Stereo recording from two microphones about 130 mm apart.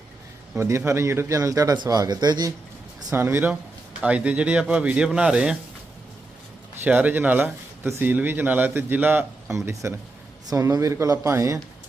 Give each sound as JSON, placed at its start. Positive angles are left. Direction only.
{"t": 0.5, "sound": "a man's voice", "side_deg": -15}
{"t": 3.1, "sound": "speech", "side_deg": -20}
{"t": 6.8, "sound": "a man's voice", "side_deg": -15}